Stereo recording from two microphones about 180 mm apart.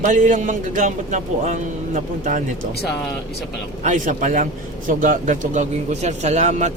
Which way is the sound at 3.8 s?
45° right (ahead or behind).